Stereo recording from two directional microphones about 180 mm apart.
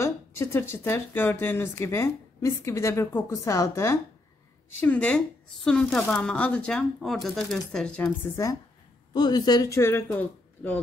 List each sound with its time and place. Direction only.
0.0 s speech: 15° left (ahead or behind)